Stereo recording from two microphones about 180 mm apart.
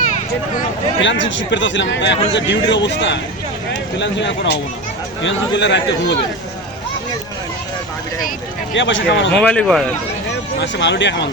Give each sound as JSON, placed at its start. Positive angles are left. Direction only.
{"t": 1.0, "sound": "a man's voice", "side_deg": 90}
{"t": 8.7, "sound": "speech", "side_deg": 90}
{"t": 9.3, "sound": "speech", "side_deg": 5}
{"t": 10.6, "sound": "speech", "side_deg": 75}